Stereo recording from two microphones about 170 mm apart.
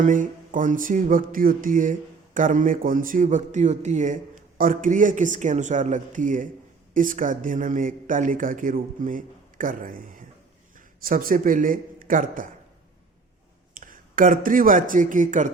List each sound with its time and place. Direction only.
0.0 s a sound: 50° right (ahead or behind)
10.8 s speech: 55° right (ahead or behind)
13.7 s speech: 50° right (ahead or behind)